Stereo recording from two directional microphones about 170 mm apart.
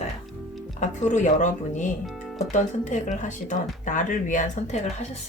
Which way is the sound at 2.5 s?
45° left (ahead or behind).